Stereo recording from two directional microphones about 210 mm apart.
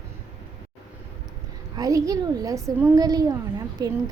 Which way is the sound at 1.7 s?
15° right (ahead or behind).